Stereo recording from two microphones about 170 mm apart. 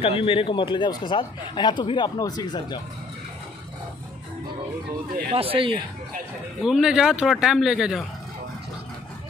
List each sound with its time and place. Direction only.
0.0 s speech: 35° left (ahead or behind)
5.3 s speech: 35° right (ahead or behind)
6.6 s speech: 5° right (ahead or behind)